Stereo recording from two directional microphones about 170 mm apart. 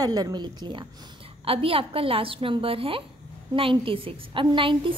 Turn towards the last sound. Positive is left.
turn(degrees=-30)  # may be behind; listen again after turning